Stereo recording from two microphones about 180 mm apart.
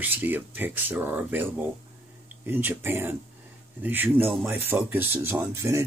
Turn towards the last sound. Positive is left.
turn(degrees=-15)  # may be behind; listen again after turning